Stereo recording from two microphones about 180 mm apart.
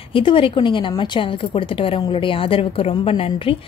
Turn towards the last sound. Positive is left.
turn(degrees=30)  # may be behind; listen again after turning